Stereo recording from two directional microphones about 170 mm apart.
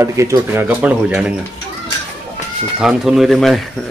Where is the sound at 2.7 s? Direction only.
Centre (ahead or behind).